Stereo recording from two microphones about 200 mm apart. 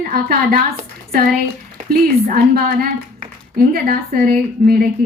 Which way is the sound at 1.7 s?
45° right (ahead or behind).